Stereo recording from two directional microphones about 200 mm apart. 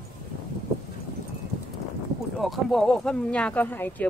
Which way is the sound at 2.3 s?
Centre (ahead or behind).